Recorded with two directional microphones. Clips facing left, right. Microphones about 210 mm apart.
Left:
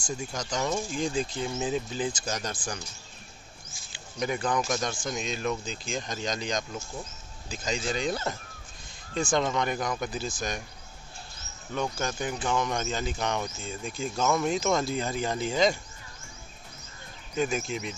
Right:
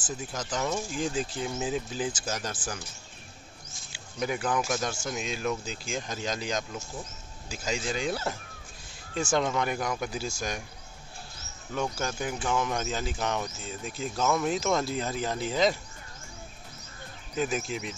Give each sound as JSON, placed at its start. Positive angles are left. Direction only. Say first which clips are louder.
{"t": 0.0, "sound": "speech", "louder": "left 1 dB", "side_deg": -5}
{"t": 3.9, "sound": "speech", "louder": "left 1 dB", "side_deg": -5}
{"t": 11.7, "sound": "speech", "louder": "even", "side_deg": -5}
{"t": 17.4, "sound": "speech", "louder": "left 1 dB", "side_deg": 0}